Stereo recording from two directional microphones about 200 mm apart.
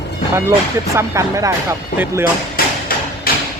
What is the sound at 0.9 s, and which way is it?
Speech, 15° right (ahead or behind).